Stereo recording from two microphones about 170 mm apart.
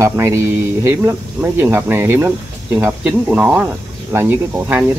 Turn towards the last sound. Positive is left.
turn(degrees=-10)  # may be behind; listen again after turning